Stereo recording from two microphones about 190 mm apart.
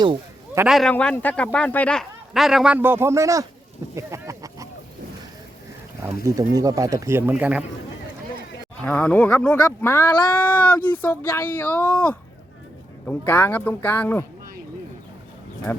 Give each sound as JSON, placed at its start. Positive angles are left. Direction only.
{"t": 0.7, "sound": "a man's voice", "side_deg": 5}
{"t": 3.9, "sound": "a sound", "side_deg": -15}
{"t": 6.2, "sound": "speech", "side_deg": -20}
{"t": 8.8, "sound": "speech", "side_deg": 5}